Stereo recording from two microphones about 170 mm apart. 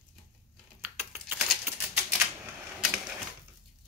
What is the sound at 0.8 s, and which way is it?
Typing, 10° right (ahead or behind).